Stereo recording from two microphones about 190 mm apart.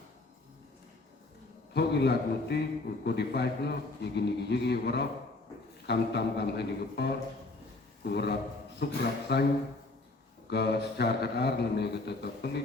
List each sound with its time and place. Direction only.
1.7 s a man's voice: 60° left (ahead or behind)
10.5 s a man's voice: 60° left (ahead or behind)